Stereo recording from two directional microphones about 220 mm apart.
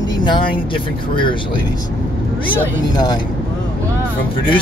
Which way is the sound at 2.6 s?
20° left (ahead or behind).